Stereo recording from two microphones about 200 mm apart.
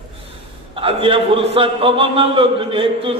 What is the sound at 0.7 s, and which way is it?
Speech, 25° right (ahead or behind).